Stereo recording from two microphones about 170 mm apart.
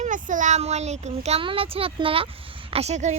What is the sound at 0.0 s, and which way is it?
Speech, 50° right (ahead or behind).